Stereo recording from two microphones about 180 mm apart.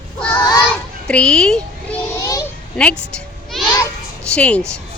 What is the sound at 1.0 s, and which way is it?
Speech, 5° left (ahead or behind).